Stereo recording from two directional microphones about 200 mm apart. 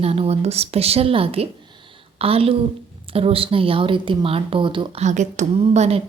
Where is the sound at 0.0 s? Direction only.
30° right (ahead or behind).